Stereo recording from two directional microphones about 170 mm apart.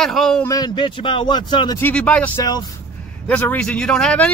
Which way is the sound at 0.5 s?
25° left (ahead or behind).